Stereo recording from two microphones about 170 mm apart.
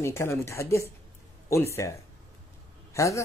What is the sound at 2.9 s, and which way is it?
Speech, 20° left (ahead or behind).